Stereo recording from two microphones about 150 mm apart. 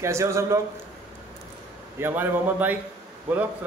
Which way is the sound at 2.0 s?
15° right (ahead or behind).